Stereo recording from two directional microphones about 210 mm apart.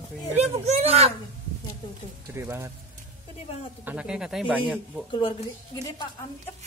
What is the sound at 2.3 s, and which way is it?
Speech, 10° right (ahead or behind).